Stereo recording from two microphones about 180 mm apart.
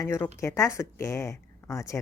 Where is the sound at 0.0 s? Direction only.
15° left (ahead or behind).